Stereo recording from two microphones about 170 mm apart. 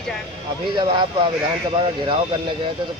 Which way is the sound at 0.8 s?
25° right (ahead or behind).